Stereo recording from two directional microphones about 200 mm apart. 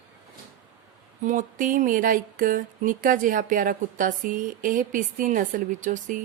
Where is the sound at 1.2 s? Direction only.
40° right (ahead or behind).